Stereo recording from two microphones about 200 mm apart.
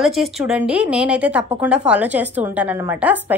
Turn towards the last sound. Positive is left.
turn(degrees=-10)  # may be behind; listen again after turning